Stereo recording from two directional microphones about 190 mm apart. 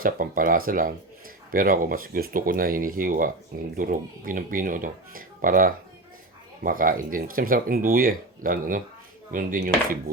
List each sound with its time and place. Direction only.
0.0 s speech: 45° right (ahead or behind)